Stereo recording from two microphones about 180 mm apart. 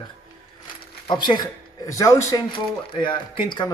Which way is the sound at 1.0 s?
25° left (ahead or behind).